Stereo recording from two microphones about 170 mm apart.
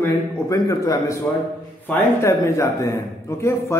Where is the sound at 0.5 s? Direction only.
20° left (ahead or behind).